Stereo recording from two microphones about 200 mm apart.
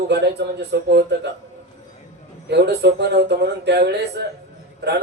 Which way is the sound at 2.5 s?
55° right (ahead or behind).